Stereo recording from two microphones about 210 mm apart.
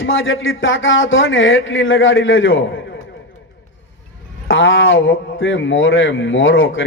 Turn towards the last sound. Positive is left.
turn(degrees=65)  # may be behind; listen again after turning